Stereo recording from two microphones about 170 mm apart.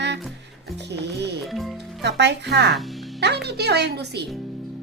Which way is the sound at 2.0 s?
85° right.